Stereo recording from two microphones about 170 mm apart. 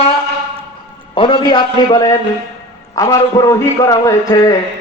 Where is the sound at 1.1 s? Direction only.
30° left (ahead or behind).